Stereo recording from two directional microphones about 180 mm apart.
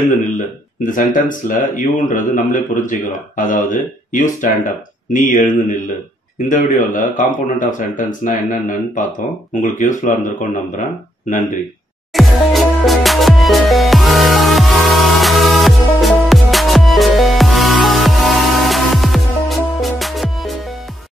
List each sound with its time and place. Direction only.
0.2 s a man's voice: 45° left (ahead or behind)
12.1 s music: centre (ahead or behind)